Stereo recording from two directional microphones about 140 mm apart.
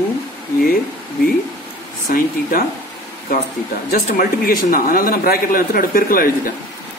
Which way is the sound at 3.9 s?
85° left.